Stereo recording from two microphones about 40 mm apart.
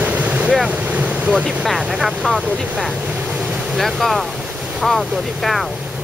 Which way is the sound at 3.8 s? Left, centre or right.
Centre.